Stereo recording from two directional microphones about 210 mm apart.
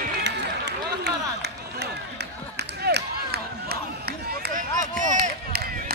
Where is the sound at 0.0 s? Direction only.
50° right (ahead or behind).